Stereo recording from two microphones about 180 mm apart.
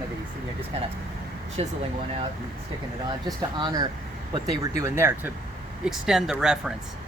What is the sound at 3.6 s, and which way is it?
A woman's voice, 20° right (ahead or behind).